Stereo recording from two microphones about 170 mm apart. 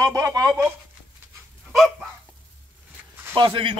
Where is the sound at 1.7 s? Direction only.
Centre (ahead or behind).